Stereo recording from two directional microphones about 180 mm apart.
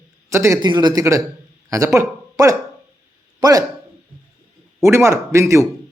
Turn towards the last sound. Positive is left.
turn(degrees=-15)  # may be behind; listen again after turning